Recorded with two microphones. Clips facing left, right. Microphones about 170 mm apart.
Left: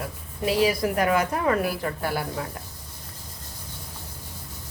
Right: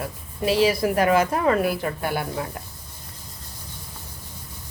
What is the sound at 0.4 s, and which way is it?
A woman's voice, 25° right (ahead or behind).